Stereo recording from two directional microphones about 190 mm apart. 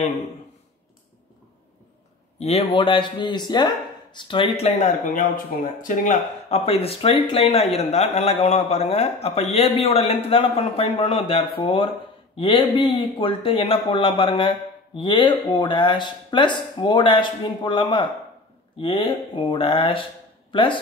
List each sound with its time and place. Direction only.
2.3 s speech: 35° left (ahead or behind)